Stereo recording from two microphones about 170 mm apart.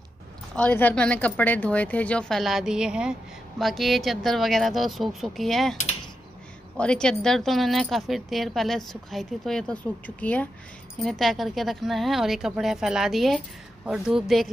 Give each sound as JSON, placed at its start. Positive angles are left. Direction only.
{"t": 0.6, "sound": "a woman's voice", "side_deg": 10}
{"t": 6.8, "sound": "a woman's voice", "side_deg": 5}